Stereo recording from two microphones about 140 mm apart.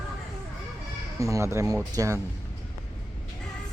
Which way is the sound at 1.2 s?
20° right (ahead or behind).